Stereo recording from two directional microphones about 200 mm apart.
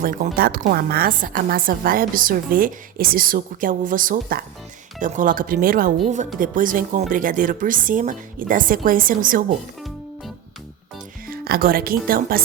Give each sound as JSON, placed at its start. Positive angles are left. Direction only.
{"t": 0.0, "sound": "a woman's voice", "side_deg": -45}
{"t": 11.3, "sound": "speech", "side_deg": -50}